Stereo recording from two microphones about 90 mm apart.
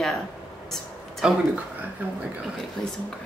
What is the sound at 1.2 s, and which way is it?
Speech, 5° right (ahead or behind).